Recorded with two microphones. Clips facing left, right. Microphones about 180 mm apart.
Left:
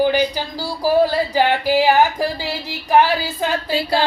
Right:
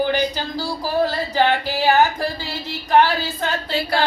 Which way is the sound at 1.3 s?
15° left (ahead or behind).